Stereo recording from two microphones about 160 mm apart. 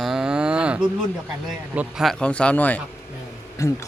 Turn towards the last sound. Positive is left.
turn(degrees=20)  # may be behind; listen again after turning